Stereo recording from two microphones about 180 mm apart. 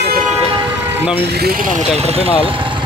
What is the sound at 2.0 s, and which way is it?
Speech, 35° right (ahead or behind).